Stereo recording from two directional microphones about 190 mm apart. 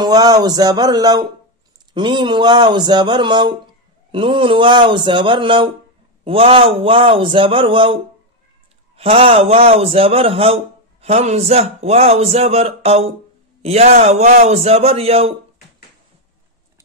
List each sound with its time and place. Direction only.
0.0 s a man's voice: 20° right (ahead or behind)